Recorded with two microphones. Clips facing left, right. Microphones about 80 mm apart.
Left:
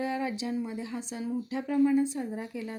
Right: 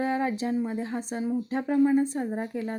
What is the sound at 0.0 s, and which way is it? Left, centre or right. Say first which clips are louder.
A woman's voice: right 4 dB; right.